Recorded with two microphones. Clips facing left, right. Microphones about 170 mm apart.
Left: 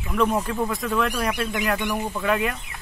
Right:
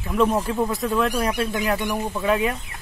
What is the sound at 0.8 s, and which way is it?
A man's voice, 25° right (ahead or behind).